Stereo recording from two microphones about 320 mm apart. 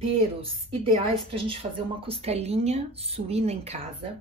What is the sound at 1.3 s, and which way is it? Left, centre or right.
Speech, centre.